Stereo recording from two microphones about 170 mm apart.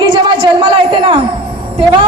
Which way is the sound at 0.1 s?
30° right (ahead or behind).